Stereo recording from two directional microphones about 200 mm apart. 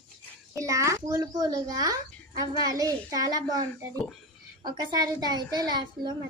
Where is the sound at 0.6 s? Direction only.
15° right (ahead or behind).